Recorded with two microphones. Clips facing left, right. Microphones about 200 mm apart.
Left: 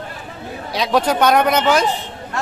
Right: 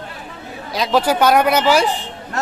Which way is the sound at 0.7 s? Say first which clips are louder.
Right 1 dB; centre (ahead or behind).